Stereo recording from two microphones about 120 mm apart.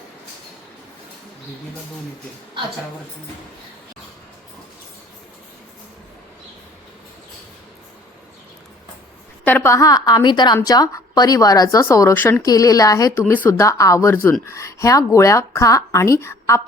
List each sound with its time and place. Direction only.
9.4 s a woman's voice: 15° left (ahead or behind)
12.4 s speech: 30° left (ahead or behind)